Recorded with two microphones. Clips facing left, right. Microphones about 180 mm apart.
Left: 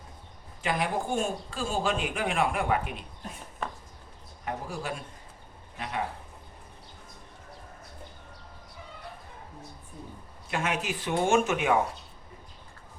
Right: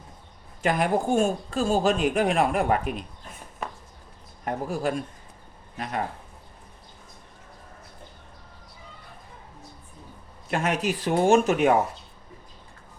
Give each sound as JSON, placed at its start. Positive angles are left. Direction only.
{"t": 0.6, "sound": "speech", "side_deg": -45}
{"t": 4.4, "sound": "speech", "side_deg": -50}
{"t": 10.5, "sound": "speech", "side_deg": -40}